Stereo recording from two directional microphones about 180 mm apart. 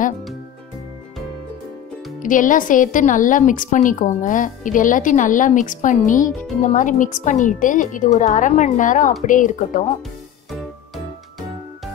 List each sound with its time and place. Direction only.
2.2 s a woman's voice: 45° left (ahead or behind)